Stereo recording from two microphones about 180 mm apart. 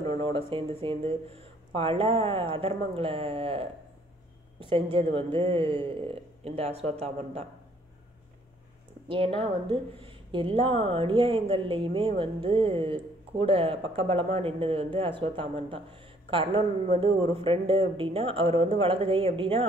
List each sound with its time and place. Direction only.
0.1 s a woman's voice: 30° right (ahead or behind)
9.1 s a woman's voice: 30° right (ahead or behind)